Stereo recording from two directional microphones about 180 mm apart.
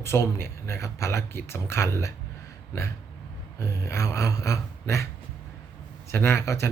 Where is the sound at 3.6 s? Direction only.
15° left (ahead or behind).